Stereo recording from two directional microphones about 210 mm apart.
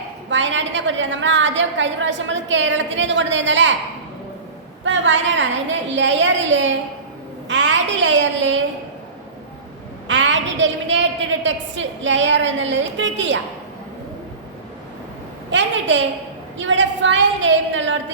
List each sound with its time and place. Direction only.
0.3 s a woman's voice: 60° right (ahead or behind)
4.8 s a woman's voice: 65° right (ahead or behind)
10.1 s a woman's voice: 60° right (ahead or behind)
15.4 s a sound: 60° right (ahead or behind)
16.6 s a woman's voice: 60° right (ahead or behind)